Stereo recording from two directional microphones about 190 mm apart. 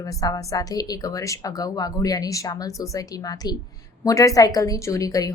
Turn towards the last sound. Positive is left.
turn(degrees=20)  # may be behind; listen again after turning